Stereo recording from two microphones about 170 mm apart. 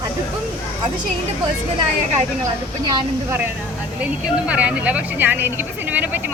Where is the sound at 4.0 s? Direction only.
10° right (ahead or behind).